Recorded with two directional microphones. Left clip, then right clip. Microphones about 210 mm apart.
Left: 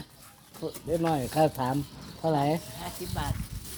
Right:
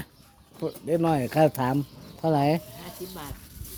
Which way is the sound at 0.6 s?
55° right (ahead or behind).